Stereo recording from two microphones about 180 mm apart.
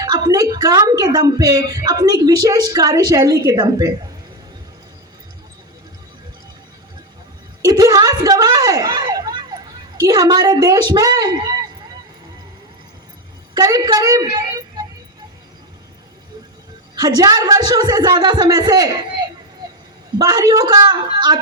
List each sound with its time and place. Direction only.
0.0 s a woman's voice: 20° right (ahead or behind)
7.6 s a sound: 20° right (ahead or behind)
10.0 s a woman's voice: 20° right (ahead or behind)
13.5 s a woman's voice: 20° right (ahead or behind)
16.9 s a woman's voice: 20° right (ahead or behind)
20.1 s a woman's voice: 20° right (ahead or behind)